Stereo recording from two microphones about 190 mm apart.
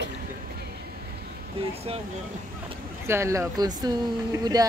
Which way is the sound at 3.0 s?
15° right (ahead or behind).